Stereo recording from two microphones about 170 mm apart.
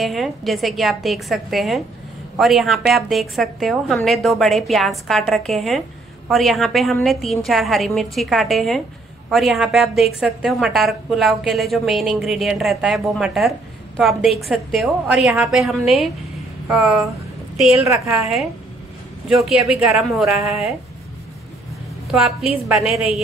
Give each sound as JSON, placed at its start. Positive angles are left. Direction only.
{"t": 0.0, "sound": "a woman's voice", "side_deg": 0}
{"t": 17.8, "sound": "a woman's voice", "side_deg": -15}
{"t": 19.2, "sound": "a woman's voice", "side_deg": 0}
{"t": 22.1, "sound": "a woman's voice", "side_deg": 0}